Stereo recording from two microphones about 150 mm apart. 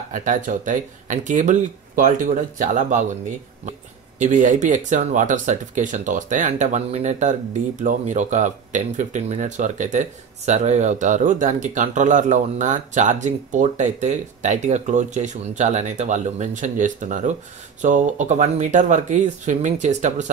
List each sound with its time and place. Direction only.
0.1 s speech: 60° right (ahead or behind)